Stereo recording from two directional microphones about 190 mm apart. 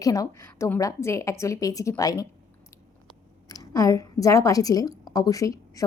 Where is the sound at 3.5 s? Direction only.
20° left (ahead or behind).